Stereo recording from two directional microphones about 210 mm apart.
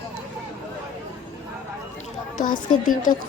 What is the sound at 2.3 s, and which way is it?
Speech, 40° left (ahead or behind).